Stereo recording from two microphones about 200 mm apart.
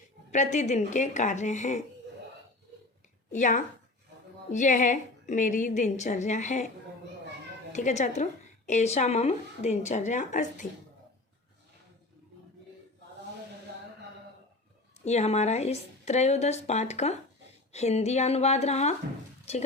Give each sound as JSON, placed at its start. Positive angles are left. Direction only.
{"t": 0.3, "sound": "a woman's voice", "side_deg": 35}
{"t": 3.3, "sound": "a woman's voice", "side_deg": 40}
{"t": 7.7, "sound": "a woman's voice", "side_deg": 35}
{"t": 15.0, "sound": "a woman's voice", "side_deg": 35}